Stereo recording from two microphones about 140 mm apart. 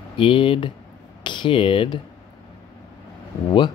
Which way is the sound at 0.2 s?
40° left (ahead or behind).